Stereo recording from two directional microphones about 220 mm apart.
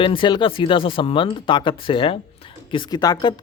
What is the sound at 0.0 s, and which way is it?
Speech, 25° left (ahead or behind).